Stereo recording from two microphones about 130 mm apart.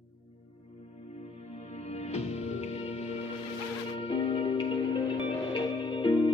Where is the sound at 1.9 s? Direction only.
55° left (ahead or behind).